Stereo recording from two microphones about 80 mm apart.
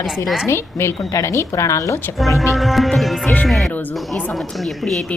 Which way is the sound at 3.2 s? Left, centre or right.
Centre.